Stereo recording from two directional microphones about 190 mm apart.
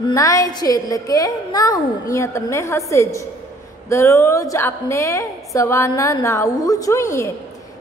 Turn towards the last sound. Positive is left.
turn(degrees=15)  # may be behind; listen again after turning